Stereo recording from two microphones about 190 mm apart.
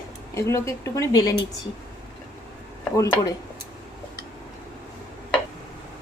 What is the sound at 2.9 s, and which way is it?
Speech, 15° left (ahead or behind).